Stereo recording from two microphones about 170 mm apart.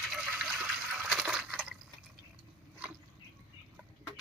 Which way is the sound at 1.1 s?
Centre (ahead or behind).